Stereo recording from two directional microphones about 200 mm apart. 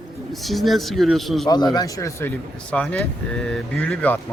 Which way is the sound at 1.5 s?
20° left (ahead or behind).